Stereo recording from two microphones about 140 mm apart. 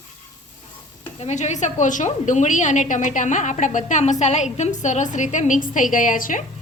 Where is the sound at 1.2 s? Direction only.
55° left (ahead or behind); by 6.4 s 70° left (ahead or behind).